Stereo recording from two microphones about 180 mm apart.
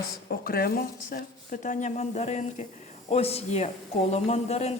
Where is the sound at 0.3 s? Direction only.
55° left (ahead or behind).